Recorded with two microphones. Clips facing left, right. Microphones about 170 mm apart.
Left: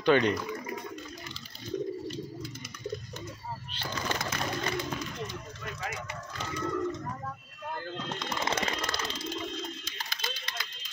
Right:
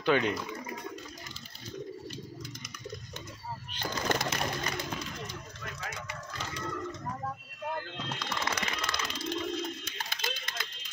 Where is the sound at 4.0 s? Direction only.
40° right (ahead or behind).